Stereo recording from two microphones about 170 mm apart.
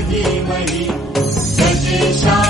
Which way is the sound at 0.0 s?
Centre (ahead or behind).